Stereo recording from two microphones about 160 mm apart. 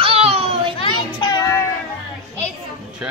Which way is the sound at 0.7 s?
30° left (ahead or behind).